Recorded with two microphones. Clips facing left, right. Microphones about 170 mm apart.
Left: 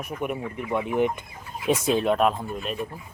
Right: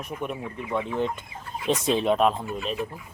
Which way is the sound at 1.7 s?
Centre (ahead or behind).